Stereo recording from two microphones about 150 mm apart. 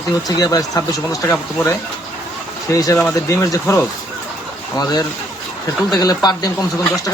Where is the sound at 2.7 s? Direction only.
20° left (ahead or behind).